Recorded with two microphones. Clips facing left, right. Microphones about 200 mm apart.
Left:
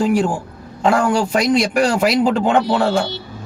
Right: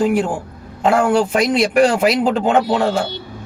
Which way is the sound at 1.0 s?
55° right (ahead or behind).